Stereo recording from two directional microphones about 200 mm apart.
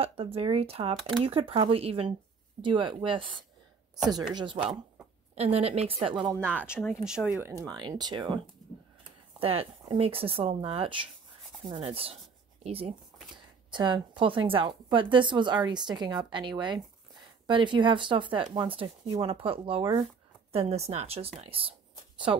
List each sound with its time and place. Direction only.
0.0 s speech: 30° right (ahead or behind)
5.3 s a woman's voice: 30° right (ahead or behind)
6.4 s speech: 5° right (ahead or behind)
7.6 s speech: 20° right (ahead or behind)
9.4 s a woman's voice: 30° right (ahead or behind)